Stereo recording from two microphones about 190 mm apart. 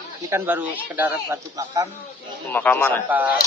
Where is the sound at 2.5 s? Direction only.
10° left (ahead or behind).